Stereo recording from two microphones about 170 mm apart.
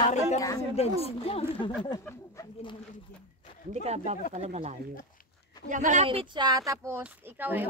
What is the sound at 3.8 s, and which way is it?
Speech, 40° right (ahead or behind).